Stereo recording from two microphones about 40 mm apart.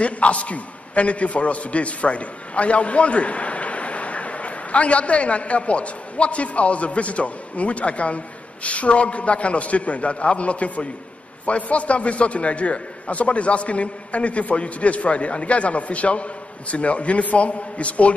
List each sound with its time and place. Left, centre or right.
0.0 s a man's voice: left